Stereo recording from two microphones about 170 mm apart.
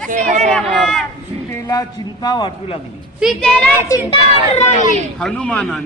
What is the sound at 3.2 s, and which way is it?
Speech, centre (ahead or behind).